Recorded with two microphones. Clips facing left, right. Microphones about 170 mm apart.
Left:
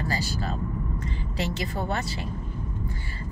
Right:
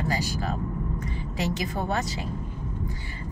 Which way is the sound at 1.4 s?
15° right (ahead or behind).